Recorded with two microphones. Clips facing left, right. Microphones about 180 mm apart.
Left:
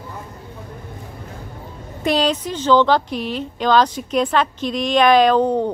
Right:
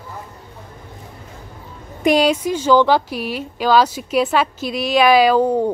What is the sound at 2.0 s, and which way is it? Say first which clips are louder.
Speech: right 4 dB; 10° right (ahead or behind).